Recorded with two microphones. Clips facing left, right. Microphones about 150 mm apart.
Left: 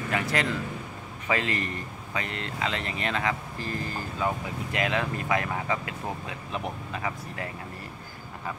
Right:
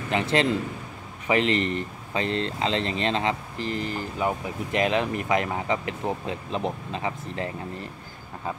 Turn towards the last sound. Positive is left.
turn(degrees=-25)  # may be behind; listen again after turning